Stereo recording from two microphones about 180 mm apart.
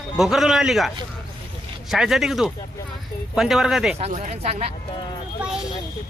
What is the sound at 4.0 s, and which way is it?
Speech, 40° right (ahead or behind).